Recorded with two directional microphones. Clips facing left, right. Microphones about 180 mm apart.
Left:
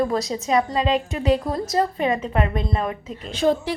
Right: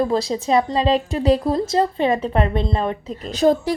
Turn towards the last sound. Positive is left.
turn(degrees=-40)  # may be behind; listen again after turning